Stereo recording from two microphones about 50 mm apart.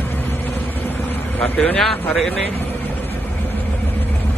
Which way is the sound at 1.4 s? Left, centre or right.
Left.